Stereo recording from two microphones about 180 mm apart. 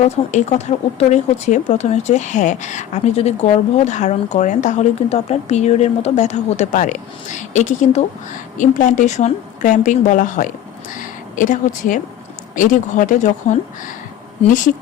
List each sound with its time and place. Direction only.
0.0 s a woman's voice: 40° left (ahead or behind)